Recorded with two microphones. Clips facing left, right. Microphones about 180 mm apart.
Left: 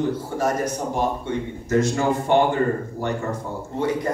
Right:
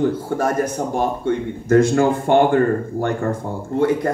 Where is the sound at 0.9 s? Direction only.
55° right (ahead or behind).